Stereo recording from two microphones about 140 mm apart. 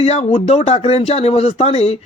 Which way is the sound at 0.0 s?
50° left (ahead or behind).